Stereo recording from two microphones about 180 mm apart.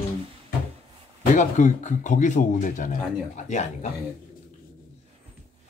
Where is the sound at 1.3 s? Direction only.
45° left (ahead or behind).